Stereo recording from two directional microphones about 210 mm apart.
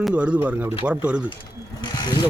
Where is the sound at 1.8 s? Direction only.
20° left (ahead or behind).